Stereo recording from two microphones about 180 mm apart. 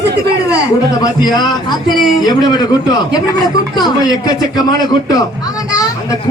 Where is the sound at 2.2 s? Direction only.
20° left (ahead or behind).